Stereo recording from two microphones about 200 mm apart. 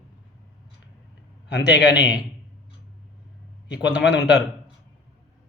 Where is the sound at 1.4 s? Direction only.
60° left (ahead or behind).